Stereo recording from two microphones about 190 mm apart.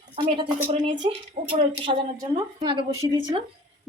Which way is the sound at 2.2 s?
20° right (ahead or behind).